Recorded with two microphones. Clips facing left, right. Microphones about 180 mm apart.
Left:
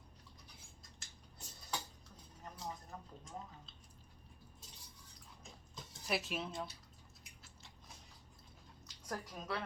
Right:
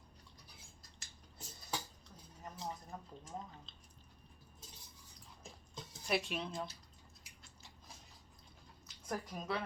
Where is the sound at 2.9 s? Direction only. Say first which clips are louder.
Right 2 dB; 5° right (ahead or behind).